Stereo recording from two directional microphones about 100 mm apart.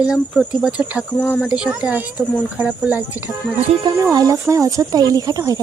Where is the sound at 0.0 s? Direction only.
5° right (ahead or behind).